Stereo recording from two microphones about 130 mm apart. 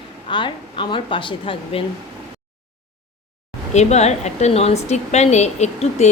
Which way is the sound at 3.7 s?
60° left (ahead or behind).